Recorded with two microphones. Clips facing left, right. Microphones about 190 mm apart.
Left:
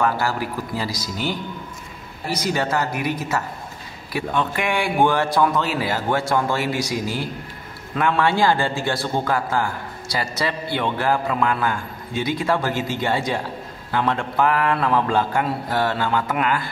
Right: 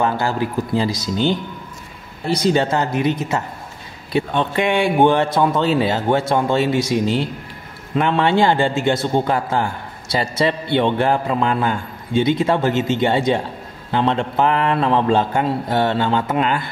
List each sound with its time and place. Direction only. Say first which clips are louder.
0.0 s a man's voice: right 2 dB; 25° right (ahead or behind)